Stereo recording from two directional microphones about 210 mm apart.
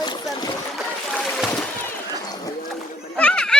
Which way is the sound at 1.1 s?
Centre (ahead or behind).